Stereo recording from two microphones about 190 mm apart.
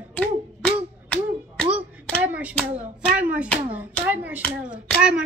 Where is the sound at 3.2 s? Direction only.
5° right (ahead or behind).